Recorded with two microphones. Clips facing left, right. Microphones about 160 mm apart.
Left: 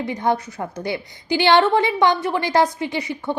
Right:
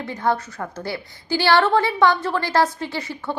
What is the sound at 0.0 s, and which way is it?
A woman's voice, 15° left (ahead or behind).